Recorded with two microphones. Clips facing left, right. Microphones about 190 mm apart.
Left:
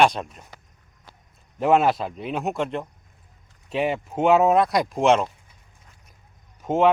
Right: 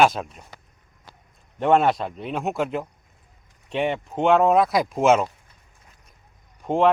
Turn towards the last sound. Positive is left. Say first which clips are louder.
# even
turn(degrees=0)  # may be behind; listen again after turning